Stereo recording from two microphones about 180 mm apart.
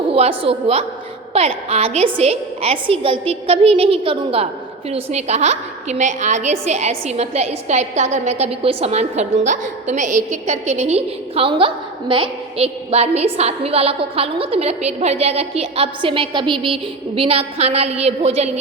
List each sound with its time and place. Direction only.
0.1 s a woman's voice: 30° right (ahead or behind)